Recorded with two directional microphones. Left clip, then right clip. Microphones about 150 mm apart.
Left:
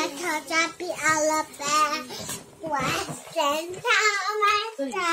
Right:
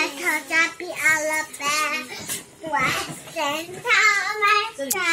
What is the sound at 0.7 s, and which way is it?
Child singing, 30° left (ahead or behind).